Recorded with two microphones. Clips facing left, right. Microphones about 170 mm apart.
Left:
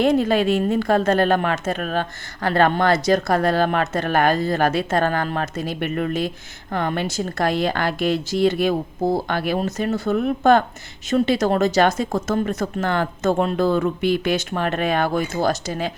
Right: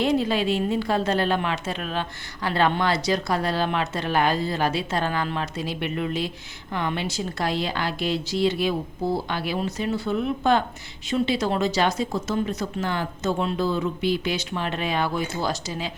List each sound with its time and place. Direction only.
0.0 s speech: 50° left (ahead or behind)